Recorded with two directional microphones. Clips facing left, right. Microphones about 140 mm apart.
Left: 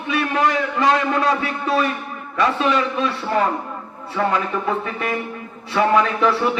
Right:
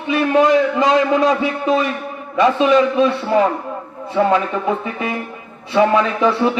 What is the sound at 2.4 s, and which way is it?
Speech, 25° right (ahead or behind).